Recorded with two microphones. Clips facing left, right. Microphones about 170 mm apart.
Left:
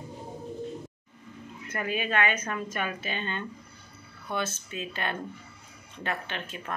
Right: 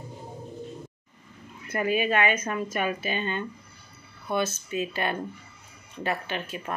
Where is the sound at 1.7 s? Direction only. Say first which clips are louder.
Right 5 dB; 10° right (ahead or behind).